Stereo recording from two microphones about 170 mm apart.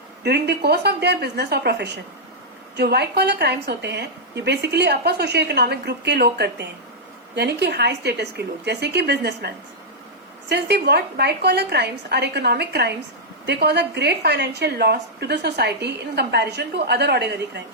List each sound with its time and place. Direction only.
0.2 s a woman's voice: 75° right (ahead or behind)
10.5 s a woman's voice: 80° right
13.4 s a woman's voice: 80° right